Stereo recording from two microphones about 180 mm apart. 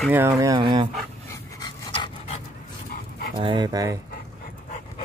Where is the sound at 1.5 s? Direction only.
25° left (ahead or behind).